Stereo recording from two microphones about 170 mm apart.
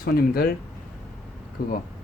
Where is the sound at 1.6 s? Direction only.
60° left (ahead or behind).